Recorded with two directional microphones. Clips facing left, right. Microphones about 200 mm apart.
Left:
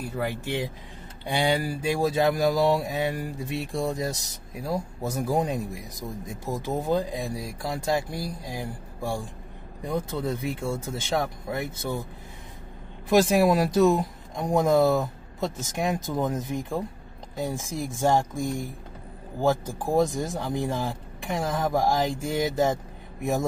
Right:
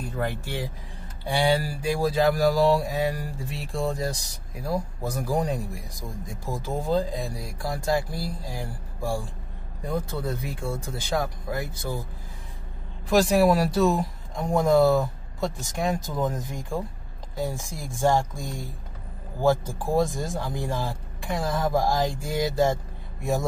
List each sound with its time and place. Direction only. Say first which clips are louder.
0.0 s speech: even; 10° left (ahead or behind); by 11.8 s 25° left (ahead or behind)
13.1 s speech: even; 20° left (ahead or behind)
19.4 s speech: right 2 dB; 15° left (ahead or behind)